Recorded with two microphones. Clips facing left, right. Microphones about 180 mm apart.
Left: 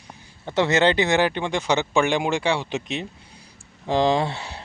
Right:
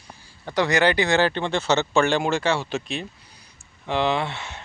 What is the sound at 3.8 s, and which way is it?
Speech, 35° left (ahead or behind).